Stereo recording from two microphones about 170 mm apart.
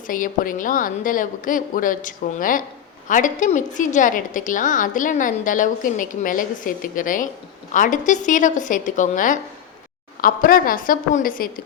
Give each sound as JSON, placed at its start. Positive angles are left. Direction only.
{"t": 0.1, "sound": "a woman's voice", "side_deg": 55}